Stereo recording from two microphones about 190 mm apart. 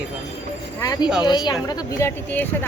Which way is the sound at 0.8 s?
20° left (ahead or behind).